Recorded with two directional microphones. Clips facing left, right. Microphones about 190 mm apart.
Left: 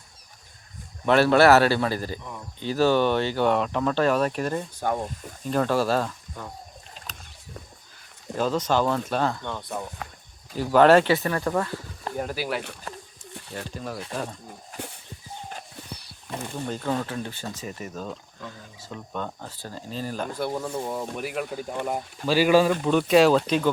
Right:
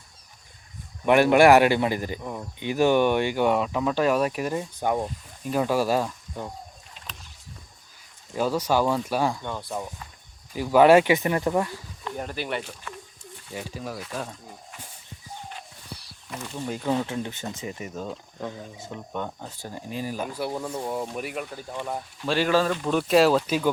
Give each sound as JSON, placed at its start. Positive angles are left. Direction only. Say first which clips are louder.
{"t": 1.0, "sound": "speech", "louder": "right 1 dB", "side_deg": -15}
{"t": 8.4, "sound": "speech", "louder": "even", "side_deg": -10}
{"t": 12.1, "sound": "speech", "louder": "left 2 dB", "side_deg": 5}
{"t": 12.9, "sound": "a sound", "louder": "left 1 dB", "side_deg": 40}
{"t": 13.5, "sound": "speech", "louder": "even", "side_deg": -10}
{"t": 14.7, "sound": "a sound", "louder": "left 9 dB", "side_deg": 40}
{"t": 16.6, "sound": "speech", "louder": "right 2 dB", "side_deg": -15}
{"t": 22.8, "sound": "speech", "louder": "left 2 dB", "side_deg": 0}